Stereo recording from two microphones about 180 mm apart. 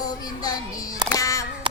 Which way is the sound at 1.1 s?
20° left (ahead or behind).